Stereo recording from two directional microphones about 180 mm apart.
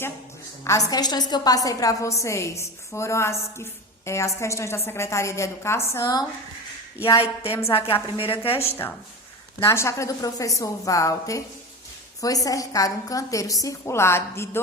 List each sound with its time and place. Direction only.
0.6 s a woman's voice: 15° left (ahead or behind)
7.7 s a woman's voice: 30° left (ahead or behind)
9.6 s a woman's voice: 15° left (ahead or behind)